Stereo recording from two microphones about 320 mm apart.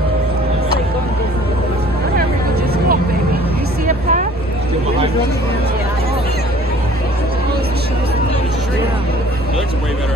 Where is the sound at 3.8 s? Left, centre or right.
Right.